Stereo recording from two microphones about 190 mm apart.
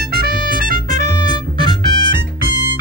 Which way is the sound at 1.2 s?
25° left (ahead or behind).